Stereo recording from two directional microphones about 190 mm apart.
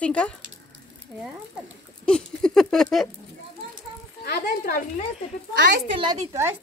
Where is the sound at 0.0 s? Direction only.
5° left (ahead or behind).